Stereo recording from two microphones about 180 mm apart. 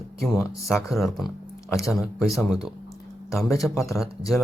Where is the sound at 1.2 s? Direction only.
15° left (ahead or behind).